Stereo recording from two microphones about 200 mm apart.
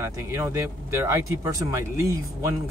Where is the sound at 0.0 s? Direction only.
15° right (ahead or behind).